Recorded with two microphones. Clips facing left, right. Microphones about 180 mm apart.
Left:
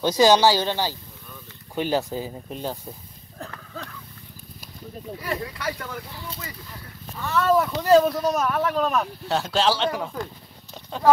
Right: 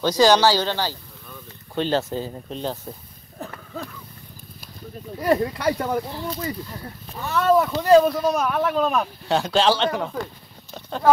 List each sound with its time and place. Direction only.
0.0 s speech: 15° left (ahead or behind)
3.3 s a sound: 5° right (ahead or behind)
5.2 s speech: 40° right (ahead or behind)
7.3 s speech: centre (ahead or behind)
10.7 s clip-clop: centre (ahead or behind)